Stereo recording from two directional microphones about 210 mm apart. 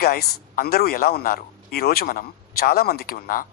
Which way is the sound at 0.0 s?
45° left (ahead or behind).